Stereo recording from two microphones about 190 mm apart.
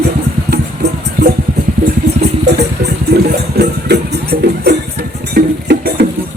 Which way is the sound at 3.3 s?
60° right (ahead or behind).